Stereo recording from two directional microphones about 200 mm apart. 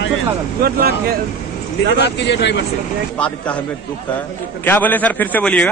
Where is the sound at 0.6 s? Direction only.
50° right (ahead or behind).